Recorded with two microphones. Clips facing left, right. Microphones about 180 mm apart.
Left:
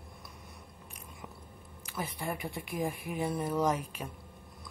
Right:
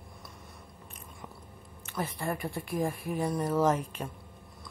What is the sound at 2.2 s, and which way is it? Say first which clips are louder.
Speech: right 3 dB; 20° left (ahead or behind).